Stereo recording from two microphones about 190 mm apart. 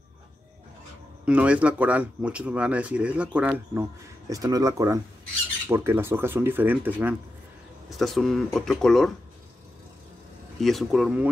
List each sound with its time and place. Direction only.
1.2 s speech: 5° right (ahead or behind)
4.3 s speech: 20° right (ahead or behind)
8.0 s speech: centre (ahead or behind)
10.6 s speech: centre (ahead or behind)